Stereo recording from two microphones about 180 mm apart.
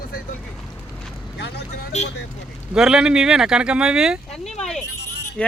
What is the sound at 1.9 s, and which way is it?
Speech, 40° left (ahead or behind).